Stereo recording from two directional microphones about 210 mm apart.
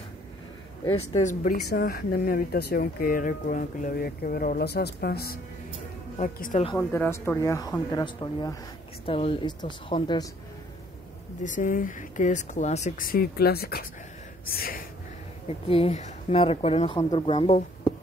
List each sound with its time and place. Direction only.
0.8 s speech: 30° left (ahead or behind)
6.8 s speech: 10° left (ahead or behind)
11.4 s speech: 40° left (ahead or behind)
14.4 s gasp: 45° left (ahead or behind)
15.4 s speech: 30° left (ahead or behind)